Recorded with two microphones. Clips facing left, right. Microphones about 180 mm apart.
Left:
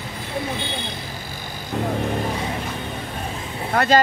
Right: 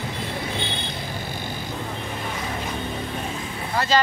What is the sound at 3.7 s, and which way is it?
Speech, 55° left (ahead or behind).